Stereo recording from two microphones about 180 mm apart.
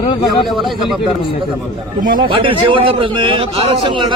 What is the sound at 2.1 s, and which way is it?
A man's voice, 30° right (ahead or behind).